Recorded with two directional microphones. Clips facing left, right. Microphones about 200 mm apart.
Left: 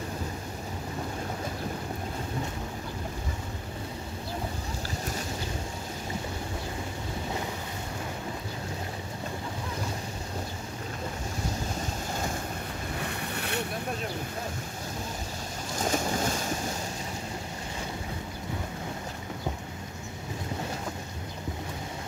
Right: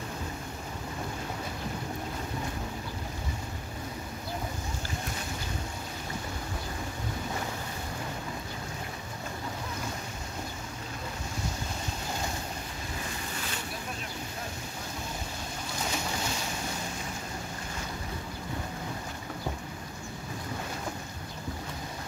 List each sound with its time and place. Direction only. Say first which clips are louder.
13.3 s boat: left 6 dB; 60° left (ahead or behind)
15.8 s boat: left 6 dB; 50° left (ahead or behind)